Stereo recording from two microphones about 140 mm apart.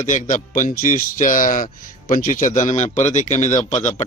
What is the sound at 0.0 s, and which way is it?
Speech, 65° left (ahead or behind).